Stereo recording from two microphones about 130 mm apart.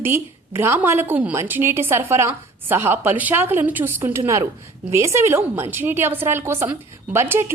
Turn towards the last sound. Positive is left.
turn(degrees=-20)  # may be behind; listen again after turning